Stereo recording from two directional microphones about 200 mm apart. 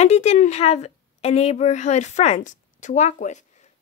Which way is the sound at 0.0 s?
35° left (ahead or behind).